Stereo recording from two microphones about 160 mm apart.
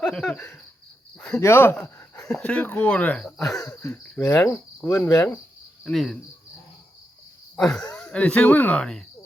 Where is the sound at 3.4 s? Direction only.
20° left (ahead or behind).